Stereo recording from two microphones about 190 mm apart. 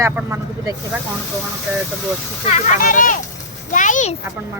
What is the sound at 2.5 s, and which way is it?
Speech, 40° left (ahead or behind).